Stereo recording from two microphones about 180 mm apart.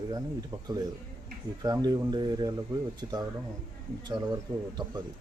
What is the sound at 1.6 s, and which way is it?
A man's voice, 20° right (ahead or behind).